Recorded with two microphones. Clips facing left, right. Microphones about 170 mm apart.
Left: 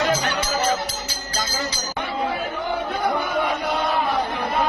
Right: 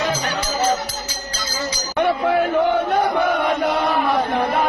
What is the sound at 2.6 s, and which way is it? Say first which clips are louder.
Chant: right 8 dB; 90° right.